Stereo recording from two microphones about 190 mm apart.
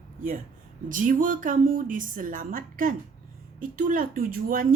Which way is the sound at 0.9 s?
45° right (ahead or behind).